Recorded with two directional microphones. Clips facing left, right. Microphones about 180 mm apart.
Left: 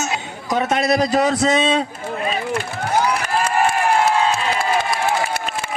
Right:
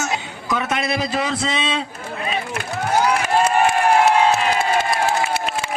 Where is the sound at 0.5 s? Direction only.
40° left (ahead or behind).